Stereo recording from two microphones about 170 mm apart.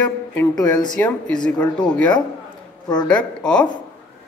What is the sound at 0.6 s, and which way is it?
Speech, 25° left (ahead or behind).